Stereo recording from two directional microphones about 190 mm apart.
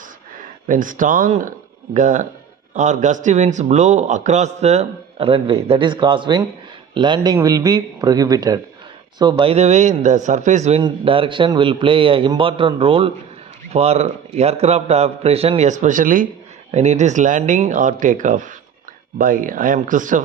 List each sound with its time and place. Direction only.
0.7 s a man's voice: 45° right (ahead or behind)
10.8 s a man's voice: 25° right (ahead or behind); by 20.2 s 45° right (ahead or behind)